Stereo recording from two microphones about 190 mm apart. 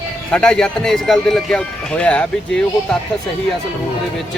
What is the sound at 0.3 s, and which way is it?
Speech, 5° left (ahead or behind).